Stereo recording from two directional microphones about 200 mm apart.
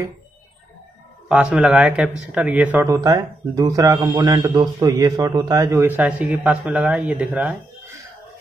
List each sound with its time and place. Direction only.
1.3 s speech: 5° right (ahead or behind)